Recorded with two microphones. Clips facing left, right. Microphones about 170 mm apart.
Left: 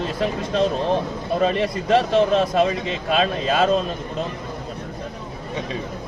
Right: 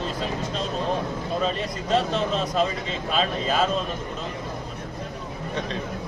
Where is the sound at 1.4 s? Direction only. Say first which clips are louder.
Left 6 dB; 65° left (ahead or behind).